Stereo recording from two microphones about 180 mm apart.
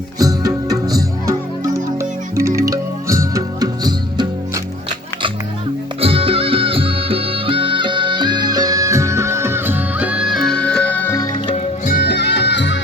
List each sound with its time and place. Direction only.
0.2 s music: 20° right (ahead or behind)
6.0 s music: 30° right (ahead or behind); by 11.5 s 20° left (ahead or behind)
11.5 s music: 45° left (ahead or behind)
12.0 s music: 70° left (ahead or behind)